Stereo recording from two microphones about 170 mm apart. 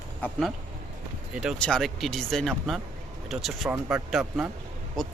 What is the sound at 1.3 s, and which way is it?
A man's voice, 5° right (ahead or behind).